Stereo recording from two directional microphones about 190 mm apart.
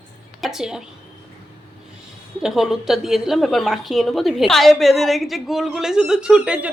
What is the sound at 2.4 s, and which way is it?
A woman's voice, centre (ahead or behind).